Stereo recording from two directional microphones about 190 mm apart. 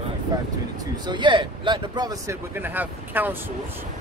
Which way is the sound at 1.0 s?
25° right (ahead or behind).